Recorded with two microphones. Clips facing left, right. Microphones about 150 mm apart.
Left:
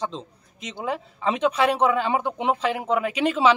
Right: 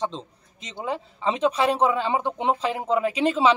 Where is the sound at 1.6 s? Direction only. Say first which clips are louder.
Left 1 dB; centre (ahead or behind).